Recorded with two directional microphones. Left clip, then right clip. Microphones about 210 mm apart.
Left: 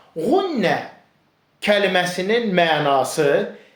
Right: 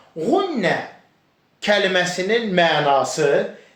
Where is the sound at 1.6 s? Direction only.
35° left (ahead or behind).